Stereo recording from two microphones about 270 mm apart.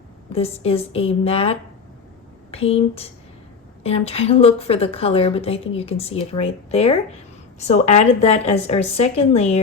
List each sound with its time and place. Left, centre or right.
0.3 s a woman's voice: left